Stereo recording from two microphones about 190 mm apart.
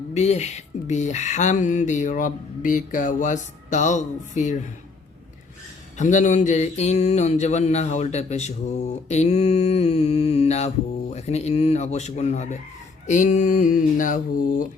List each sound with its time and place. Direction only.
0.1 s mantra: 35° left (ahead or behind)
6.0 s mantra: 40° left (ahead or behind)
13.1 s speech: 40° left (ahead or behind)